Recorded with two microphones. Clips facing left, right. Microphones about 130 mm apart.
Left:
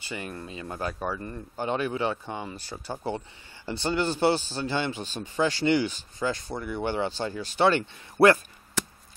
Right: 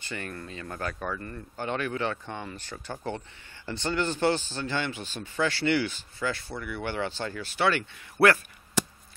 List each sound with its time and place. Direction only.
0.0 s speech: 15° left (ahead or behind)